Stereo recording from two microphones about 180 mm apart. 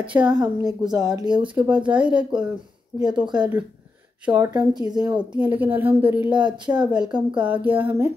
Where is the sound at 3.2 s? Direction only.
25° right (ahead or behind).